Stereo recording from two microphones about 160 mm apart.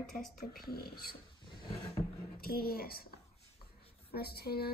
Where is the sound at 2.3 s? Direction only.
70° left (ahead or behind).